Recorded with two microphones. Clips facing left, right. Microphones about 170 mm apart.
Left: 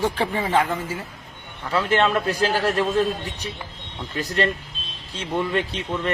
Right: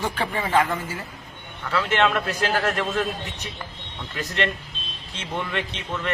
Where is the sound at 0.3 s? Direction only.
15° left (ahead or behind).